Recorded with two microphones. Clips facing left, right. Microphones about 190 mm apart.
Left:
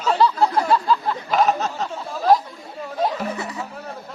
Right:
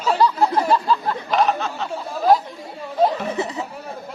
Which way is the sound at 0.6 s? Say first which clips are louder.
Even; centre (ahead or behind).